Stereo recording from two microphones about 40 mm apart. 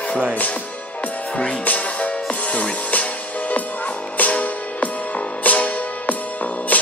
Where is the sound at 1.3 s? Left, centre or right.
Left.